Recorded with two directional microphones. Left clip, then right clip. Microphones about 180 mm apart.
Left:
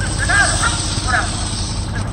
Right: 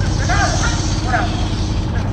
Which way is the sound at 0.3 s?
20° left (ahead or behind).